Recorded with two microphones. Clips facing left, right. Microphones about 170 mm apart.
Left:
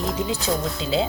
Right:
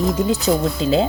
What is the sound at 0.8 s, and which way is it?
Music, 45° right (ahead or behind).